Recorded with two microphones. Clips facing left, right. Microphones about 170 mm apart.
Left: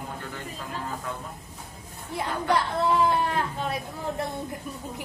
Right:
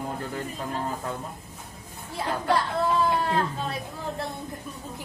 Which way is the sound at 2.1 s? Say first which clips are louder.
Even; 15° left (ahead or behind).